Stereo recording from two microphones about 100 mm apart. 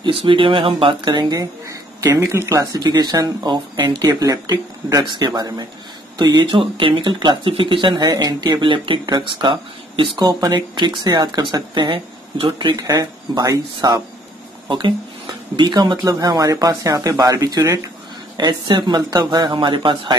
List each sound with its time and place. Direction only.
0.0 s speech: 65° right (ahead or behind)
4.0 s speech: 40° right (ahead or behind); by 12.7 s 55° right (ahead or behind)
12.7 s speech: 40° right (ahead or behind)
15.5 s speech: 45° right (ahead or behind)
18.4 s speech: 50° right (ahead or behind)